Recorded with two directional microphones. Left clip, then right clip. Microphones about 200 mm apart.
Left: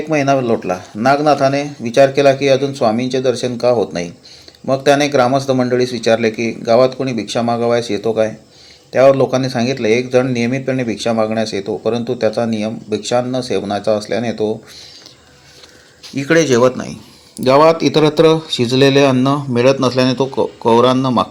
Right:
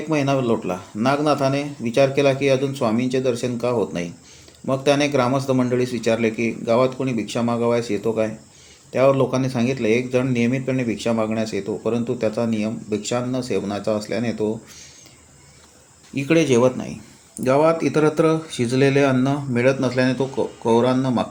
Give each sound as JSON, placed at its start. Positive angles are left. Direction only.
{"t": 0.3, "sound": "speech", "side_deg": 0}
{"t": 17.4, "sound": "speech", "side_deg": 20}